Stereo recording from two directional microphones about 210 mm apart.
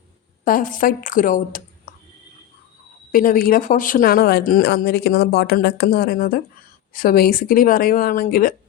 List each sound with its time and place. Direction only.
0.4 s a woman's voice: 40° left (ahead or behind)
3.1 s speech: 40° left (ahead or behind)